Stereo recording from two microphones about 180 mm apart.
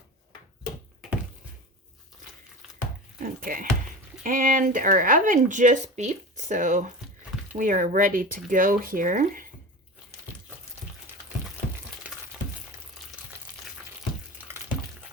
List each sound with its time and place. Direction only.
3.2 s speech: 50° right (ahead or behind)